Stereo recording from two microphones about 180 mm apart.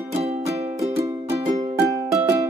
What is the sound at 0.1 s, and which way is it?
Music, 35° right (ahead or behind).